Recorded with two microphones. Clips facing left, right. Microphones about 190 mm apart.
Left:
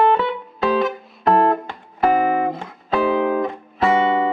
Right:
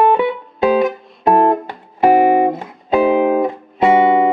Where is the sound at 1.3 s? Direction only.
20° right (ahead or behind).